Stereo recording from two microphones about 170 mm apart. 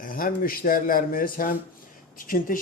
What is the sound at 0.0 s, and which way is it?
A man's voice, 55° left (ahead or behind).